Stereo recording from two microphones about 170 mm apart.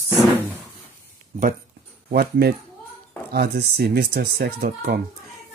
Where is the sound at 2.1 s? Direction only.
65° right (ahead or behind).